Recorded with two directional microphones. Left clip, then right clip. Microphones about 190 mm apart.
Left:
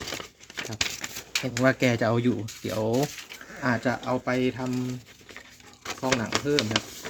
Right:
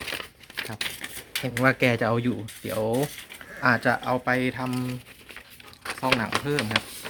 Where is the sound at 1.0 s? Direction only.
40° left (ahead or behind).